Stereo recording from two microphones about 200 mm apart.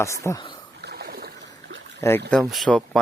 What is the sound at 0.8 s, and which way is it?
Rowboat, 50° right (ahead or behind).